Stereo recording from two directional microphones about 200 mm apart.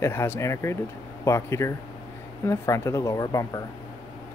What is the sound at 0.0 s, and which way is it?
Speech, 10° left (ahead or behind).